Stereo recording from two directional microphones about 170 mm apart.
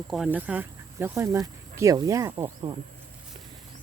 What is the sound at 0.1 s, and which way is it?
Speech, 5° right (ahead or behind).